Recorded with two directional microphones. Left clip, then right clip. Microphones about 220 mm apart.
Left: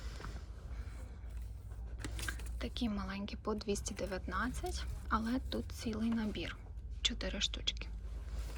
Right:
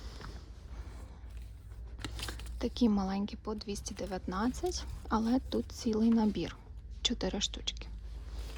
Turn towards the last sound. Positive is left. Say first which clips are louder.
# right 1 dB
turn(degrees=-15)  # may be behind; listen again after turning